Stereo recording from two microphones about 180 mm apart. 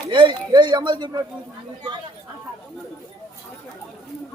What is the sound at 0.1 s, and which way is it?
Speech, 25° right (ahead or behind).